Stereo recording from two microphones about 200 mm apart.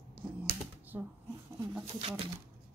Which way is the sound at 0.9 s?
10° right (ahead or behind).